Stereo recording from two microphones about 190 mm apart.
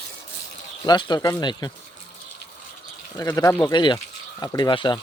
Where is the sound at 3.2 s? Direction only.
15° left (ahead or behind).